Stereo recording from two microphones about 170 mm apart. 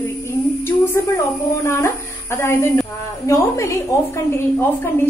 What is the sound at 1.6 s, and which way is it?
A woman's voice, 15° left (ahead or behind).